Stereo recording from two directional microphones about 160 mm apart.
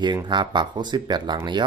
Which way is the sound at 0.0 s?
25° right (ahead or behind).